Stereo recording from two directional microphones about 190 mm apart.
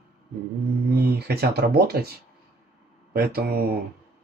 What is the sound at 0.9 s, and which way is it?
Speech, 55° right (ahead or behind).